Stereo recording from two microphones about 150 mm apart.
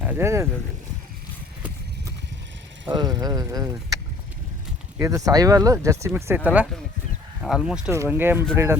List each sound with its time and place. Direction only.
0.0 s speech: 15° right (ahead or behind)
2.9 s speech: 25° right (ahead or behind); by 7.9 s 5° right (ahead or behind)
7.9 s speech: 15° right (ahead or behind)